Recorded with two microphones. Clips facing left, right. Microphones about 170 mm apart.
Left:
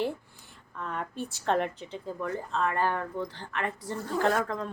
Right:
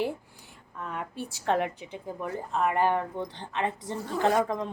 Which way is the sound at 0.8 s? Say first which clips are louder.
Left 1 dB; 10° right (ahead or behind).